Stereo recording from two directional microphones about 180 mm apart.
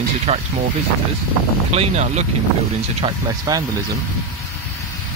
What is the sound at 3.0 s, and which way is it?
Speech, 20° right (ahead or behind).